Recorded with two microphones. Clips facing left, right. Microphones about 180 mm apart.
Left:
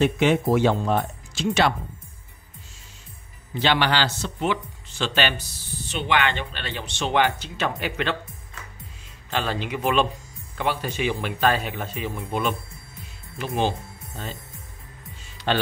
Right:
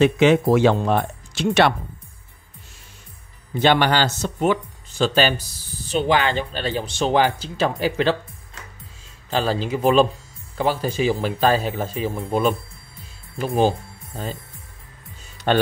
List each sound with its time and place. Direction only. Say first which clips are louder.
0.0 s speech: right 5 dB; 90° right; by 1.7 s 65° right (ahead or behind)
3.5 s speech: right 4 dB; 50° right (ahead or behind)
9.3 s speech: right 5 dB; 35° right (ahead or behind)
15.5 s speech: right 5 dB; 50° right (ahead or behind)